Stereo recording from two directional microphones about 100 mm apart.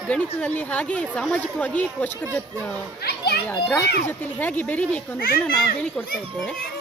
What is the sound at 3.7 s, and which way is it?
Speech, 20° left (ahead or behind).